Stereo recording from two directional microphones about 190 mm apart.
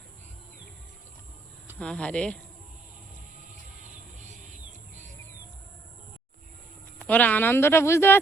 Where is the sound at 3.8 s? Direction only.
40° right (ahead or behind).